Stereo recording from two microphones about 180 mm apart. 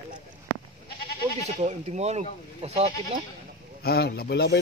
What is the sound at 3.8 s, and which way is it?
Speech, 60° left (ahead or behind).